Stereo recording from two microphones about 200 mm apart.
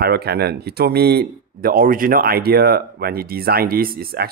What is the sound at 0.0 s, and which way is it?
Speech, 50° right (ahead or behind).